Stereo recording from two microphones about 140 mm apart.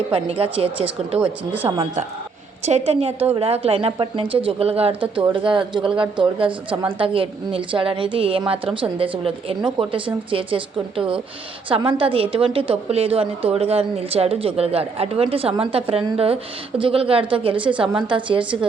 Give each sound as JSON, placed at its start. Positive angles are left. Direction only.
{"t": 0.1, "sound": "a woman's voice", "side_deg": -40}
{"t": 1.2, "sound": "speech", "side_deg": -10}
{"t": 2.6, "sound": "a woman's voice", "side_deg": -50}